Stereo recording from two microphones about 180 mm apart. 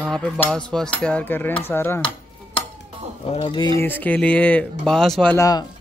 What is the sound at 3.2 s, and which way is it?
Speech, 30° left (ahead or behind).